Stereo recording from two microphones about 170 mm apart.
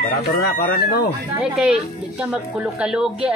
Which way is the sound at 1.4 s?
5° right (ahead or behind).